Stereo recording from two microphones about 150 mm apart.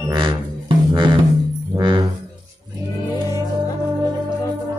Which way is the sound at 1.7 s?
30° right (ahead or behind).